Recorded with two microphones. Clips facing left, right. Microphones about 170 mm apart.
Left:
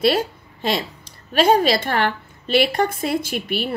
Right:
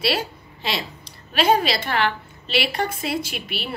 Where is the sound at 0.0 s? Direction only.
50° left (ahead or behind).